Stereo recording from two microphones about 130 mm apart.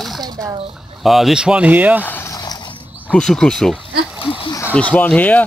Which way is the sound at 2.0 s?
15° left (ahead or behind).